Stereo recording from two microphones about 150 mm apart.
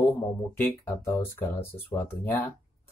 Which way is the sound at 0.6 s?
15° left (ahead or behind).